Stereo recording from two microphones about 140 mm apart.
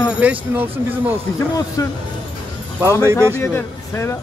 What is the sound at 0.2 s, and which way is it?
Speech, 10° right (ahead or behind).